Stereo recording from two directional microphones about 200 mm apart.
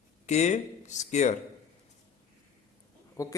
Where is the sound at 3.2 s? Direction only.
15° left (ahead or behind).